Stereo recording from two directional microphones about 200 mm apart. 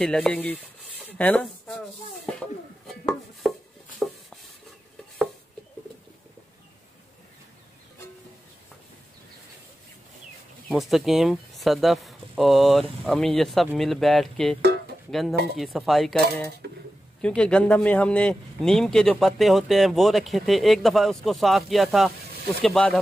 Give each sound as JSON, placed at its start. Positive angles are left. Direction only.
{"t": 0.0, "sound": "a man's voice", "side_deg": 5}
{"t": 2.9, "sound": "chopping", "side_deg": 0}
{"t": 10.7, "sound": "a man's voice", "side_deg": 0}